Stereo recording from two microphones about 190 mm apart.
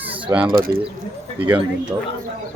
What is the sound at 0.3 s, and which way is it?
Speech, 15° right (ahead or behind).